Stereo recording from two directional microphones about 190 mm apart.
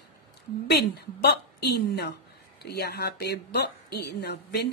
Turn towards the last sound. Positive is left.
turn(degrees=60)  # may be behind; listen again after turning